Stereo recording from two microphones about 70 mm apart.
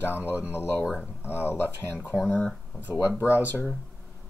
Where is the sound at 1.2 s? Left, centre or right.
Left.